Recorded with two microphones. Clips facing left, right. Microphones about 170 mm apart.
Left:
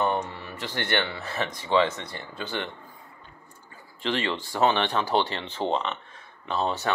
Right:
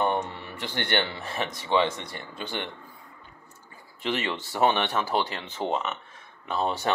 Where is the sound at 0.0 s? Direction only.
15° right (ahead or behind).